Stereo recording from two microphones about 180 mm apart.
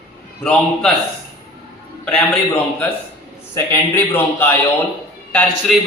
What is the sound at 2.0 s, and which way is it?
A man's voice, 10° left (ahead or behind).